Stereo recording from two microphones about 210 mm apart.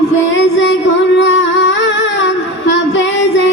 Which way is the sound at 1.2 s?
60° left (ahead or behind).